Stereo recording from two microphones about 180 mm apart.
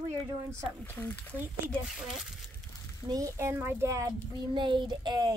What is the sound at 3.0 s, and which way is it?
A child's voice, 20° right (ahead or behind).